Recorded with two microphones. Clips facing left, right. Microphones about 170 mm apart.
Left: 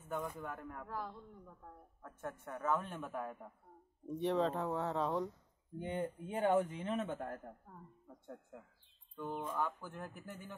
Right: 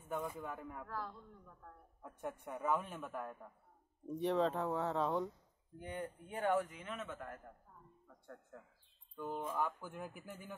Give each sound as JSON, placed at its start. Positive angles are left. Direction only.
{"t": 0.0, "sound": "speech", "side_deg": -10}
{"t": 0.8, "sound": "a man's voice", "side_deg": 15}
{"t": 2.2, "sound": "a man's voice", "side_deg": -15}
{"t": 5.8, "sound": "a man's voice", "side_deg": 20}
{"t": 9.2, "sound": "speech", "side_deg": -10}